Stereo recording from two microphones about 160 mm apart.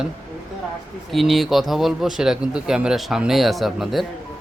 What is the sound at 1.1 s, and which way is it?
A man's voice, centre (ahead or behind).